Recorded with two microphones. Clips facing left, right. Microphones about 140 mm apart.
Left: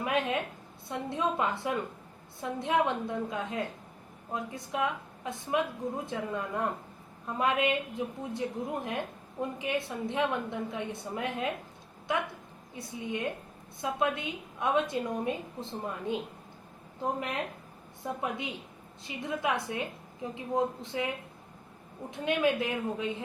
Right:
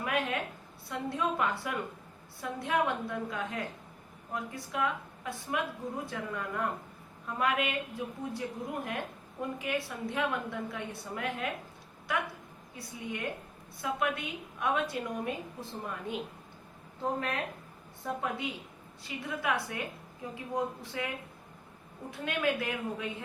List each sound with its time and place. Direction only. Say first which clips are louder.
0.0 s a sound: left 2 dB; 20° left (ahead or behind)
0.9 s a woman's voice: left 1 dB; 20° left (ahead or behind)
22.1 s a woman's voice: left 4 dB; 20° left (ahead or behind)